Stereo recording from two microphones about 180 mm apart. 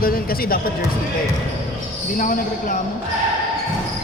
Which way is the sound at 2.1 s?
50° left (ahead or behind).